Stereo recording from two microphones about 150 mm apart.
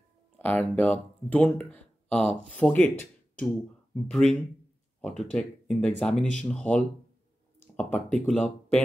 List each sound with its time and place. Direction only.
0.4 s speech: 10° left (ahead or behind)